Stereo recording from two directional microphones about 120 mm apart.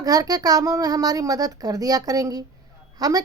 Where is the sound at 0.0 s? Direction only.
30° right (ahead or behind).